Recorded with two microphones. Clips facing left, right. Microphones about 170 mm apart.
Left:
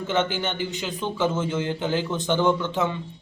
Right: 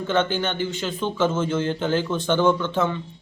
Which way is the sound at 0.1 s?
15° left (ahead or behind).